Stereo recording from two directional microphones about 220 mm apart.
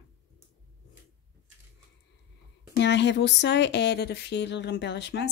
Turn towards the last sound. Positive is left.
turn(degrees=50)  # may be behind; listen again after turning